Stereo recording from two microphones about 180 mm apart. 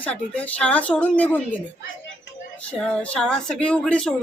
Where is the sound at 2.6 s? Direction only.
5° left (ahead or behind).